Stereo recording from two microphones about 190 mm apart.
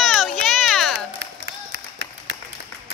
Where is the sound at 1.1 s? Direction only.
75° right (ahead or behind).